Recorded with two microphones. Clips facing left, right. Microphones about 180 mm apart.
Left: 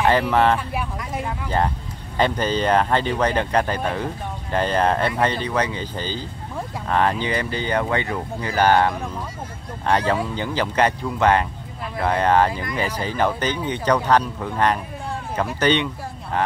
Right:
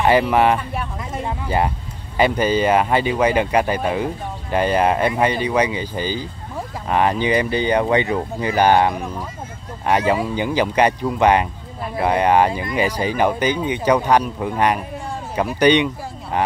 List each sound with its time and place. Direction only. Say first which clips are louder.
0.0 s speech: right 2 dB; 10° right (ahead or behind)
0.6 s speech: even; 5° left (ahead or behind)
2.1 s speech: right 4 dB; 10° right (ahead or behind)